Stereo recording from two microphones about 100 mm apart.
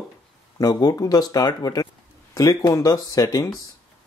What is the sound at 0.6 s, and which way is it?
Speech, 40° left (ahead or behind).